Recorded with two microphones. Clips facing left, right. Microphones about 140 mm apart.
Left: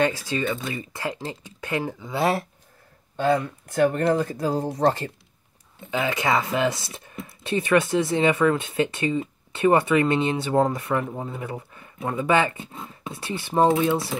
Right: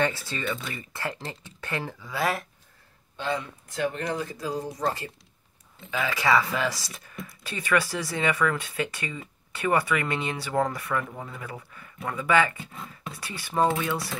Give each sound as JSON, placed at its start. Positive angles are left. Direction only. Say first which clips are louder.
{"t": 0.0, "sound": "speech", "louder": "left 4 dB", "side_deg": 15}
{"t": 3.2, "sound": "speech", "louder": "left 8 dB", "side_deg": 50}
{"t": 4.6, "sound": "speech", "louder": "left 9 dB", "side_deg": 65}
{"t": 5.9, "sound": "speech", "louder": "left 1 dB", "side_deg": 20}